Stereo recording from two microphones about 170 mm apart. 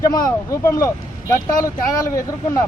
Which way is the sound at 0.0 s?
20° left (ahead or behind).